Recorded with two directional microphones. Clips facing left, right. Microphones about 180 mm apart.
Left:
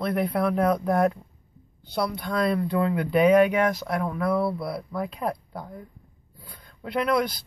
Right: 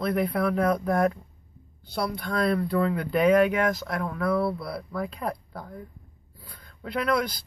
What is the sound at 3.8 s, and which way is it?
Speech, 20° left (ahead or behind).